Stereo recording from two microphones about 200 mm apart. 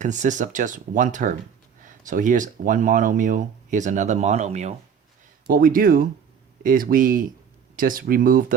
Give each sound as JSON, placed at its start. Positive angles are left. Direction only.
{"t": 0.0, "sound": "speech", "side_deg": -40}